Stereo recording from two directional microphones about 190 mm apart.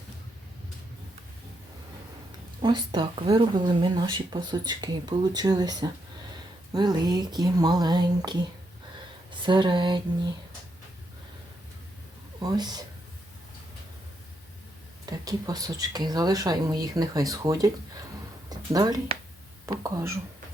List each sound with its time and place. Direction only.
2.6 s speech: 25° right (ahead or behind)
12.4 s speech: 20° right (ahead or behind)
15.0 s speech: 20° right (ahead or behind)
18.4 s a sound: 20° right (ahead or behind)
19.6 s speech: 15° right (ahead or behind)